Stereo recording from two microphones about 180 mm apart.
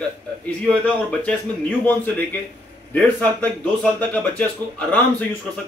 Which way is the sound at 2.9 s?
10° left (ahead or behind).